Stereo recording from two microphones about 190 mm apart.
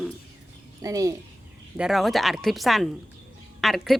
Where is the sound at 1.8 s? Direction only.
Centre (ahead or behind).